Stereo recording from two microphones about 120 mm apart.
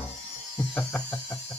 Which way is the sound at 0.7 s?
10° left (ahead or behind).